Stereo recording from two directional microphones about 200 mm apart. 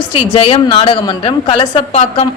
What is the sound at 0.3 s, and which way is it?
A woman's voice, 25° left (ahead or behind).